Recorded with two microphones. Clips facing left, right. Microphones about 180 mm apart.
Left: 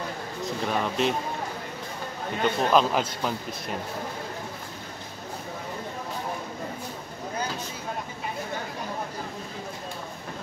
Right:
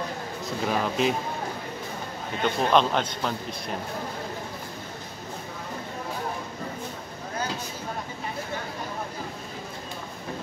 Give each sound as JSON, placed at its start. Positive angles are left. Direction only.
{"t": 0.7, "sound": "a man's voice", "side_deg": 0}
{"t": 2.4, "sound": "a man's voice", "side_deg": 0}